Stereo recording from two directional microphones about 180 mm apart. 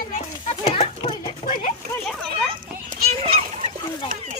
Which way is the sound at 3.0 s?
35° right (ahead or behind).